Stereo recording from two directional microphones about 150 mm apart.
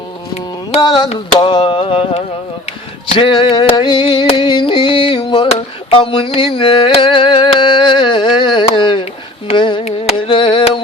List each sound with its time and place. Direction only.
0.8 s music: 30° left (ahead or behind)
3.1 s a sound: 35° left (ahead or behind)
6.1 s carnatic music: 35° left (ahead or behind)